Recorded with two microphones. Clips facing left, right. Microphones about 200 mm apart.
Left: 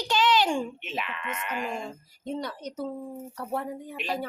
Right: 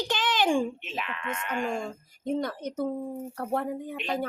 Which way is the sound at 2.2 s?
50° right (ahead or behind).